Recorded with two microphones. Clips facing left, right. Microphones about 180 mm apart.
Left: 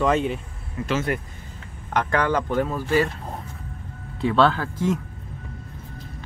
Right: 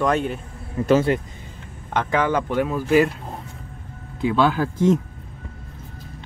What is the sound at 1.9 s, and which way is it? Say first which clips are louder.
Speech: right 1 dB; 20° right (ahead or behind).